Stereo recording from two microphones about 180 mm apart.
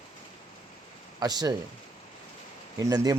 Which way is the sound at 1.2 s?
20° right (ahead or behind).